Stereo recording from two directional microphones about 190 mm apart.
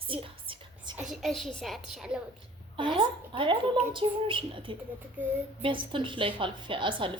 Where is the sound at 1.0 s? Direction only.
Centre (ahead or behind).